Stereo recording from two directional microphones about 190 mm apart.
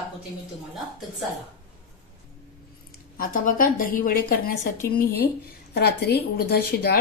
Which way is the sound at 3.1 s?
45° left (ahead or behind).